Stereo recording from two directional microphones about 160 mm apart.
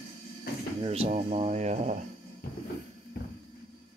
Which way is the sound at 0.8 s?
40° right (ahead or behind).